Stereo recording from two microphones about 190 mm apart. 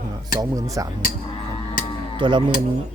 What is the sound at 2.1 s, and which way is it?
Speech, 25° right (ahead or behind).